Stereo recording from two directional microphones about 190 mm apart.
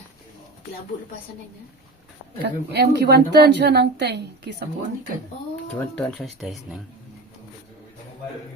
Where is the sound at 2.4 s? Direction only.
60° right (ahead or behind).